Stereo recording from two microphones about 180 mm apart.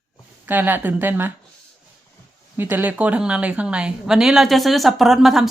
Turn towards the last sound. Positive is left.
turn(degrees=0)  # may be behind; listen again after turning